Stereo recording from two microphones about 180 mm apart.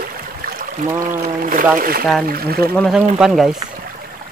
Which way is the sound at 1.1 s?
50° right (ahead or behind).